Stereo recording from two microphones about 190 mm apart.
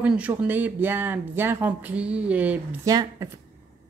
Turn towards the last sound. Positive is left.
turn(degrees=-20)  # may be behind; listen again after turning